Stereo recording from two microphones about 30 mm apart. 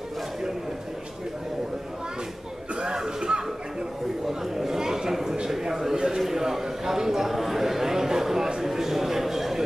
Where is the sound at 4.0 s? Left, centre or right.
Centre.